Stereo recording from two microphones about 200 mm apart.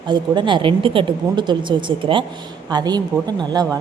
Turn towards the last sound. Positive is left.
turn(degrees=-20)  # may be behind; listen again after turning